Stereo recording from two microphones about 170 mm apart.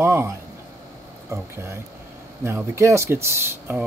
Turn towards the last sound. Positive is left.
turn(degrees=-15)  # may be behind; listen again after turning